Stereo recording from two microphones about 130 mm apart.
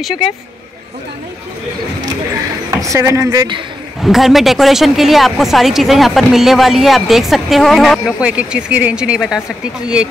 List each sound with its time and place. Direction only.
2.8 s speech: 25° right (ahead or behind)
4.0 s speech: centre (ahead or behind)
8.2 s speech: 10° right (ahead or behind)